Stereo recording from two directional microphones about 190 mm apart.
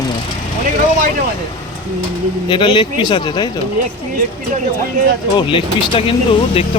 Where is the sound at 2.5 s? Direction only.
25° left (ahead or behind).